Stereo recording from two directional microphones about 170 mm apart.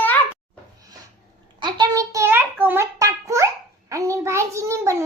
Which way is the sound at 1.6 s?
25° right (ahead or behind).